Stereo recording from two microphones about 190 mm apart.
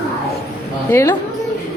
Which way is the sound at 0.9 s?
15° left (ahead or behind).